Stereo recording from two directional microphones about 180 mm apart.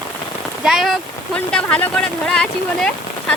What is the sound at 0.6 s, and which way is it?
Speech, centre (ahead or behind).